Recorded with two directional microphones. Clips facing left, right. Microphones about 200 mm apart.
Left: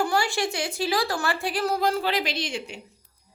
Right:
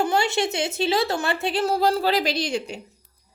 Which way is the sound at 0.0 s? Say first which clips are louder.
Right 3 dB; 20° right (ahead or behind).